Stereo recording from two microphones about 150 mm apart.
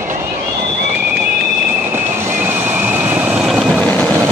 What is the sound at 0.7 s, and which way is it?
Train, 15° right (ahead or behind).